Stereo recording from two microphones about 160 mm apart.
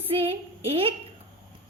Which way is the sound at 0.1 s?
35° right (ahead or behind).